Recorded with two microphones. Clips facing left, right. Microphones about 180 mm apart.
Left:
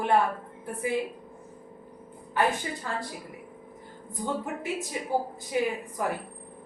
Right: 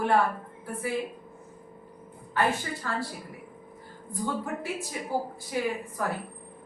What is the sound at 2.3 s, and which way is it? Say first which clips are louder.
Speech: left 1 dB; 15° left (ahead or behind).